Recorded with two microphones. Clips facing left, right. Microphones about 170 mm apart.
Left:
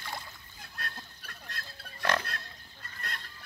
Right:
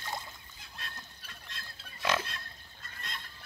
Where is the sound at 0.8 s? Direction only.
55° left (ahead or behind).